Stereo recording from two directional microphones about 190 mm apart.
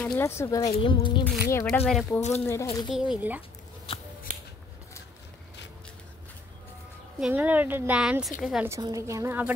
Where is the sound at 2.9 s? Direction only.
5° right (ahead or behind).